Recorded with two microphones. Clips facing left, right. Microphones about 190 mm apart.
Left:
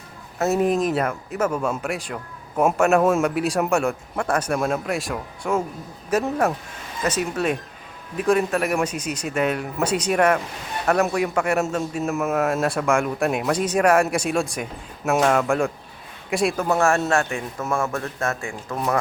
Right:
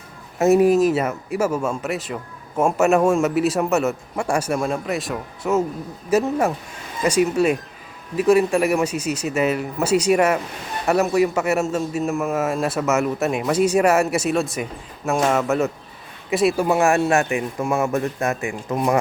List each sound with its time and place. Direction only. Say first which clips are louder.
0.3 s a man's voice: right 6 dB; 15° right (ahead or behind)